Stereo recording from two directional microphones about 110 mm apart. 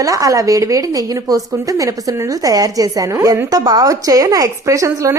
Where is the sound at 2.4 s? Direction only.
35° right (ahead or behind).